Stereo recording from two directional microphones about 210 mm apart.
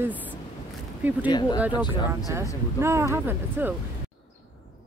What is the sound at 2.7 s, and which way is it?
Speech, 15° right (ahead or behind).